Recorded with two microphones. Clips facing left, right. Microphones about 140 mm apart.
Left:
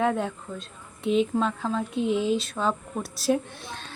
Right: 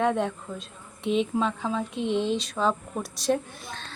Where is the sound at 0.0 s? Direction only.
Centre (ahead or behind).